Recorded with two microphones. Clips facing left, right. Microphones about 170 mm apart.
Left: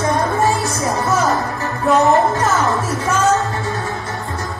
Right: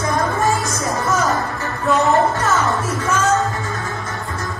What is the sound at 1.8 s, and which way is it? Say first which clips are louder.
Music: left 3 dB; 20° left (ahead or behind).